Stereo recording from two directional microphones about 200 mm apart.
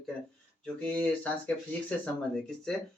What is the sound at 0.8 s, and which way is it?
Speech, 5° left (ahead or behind).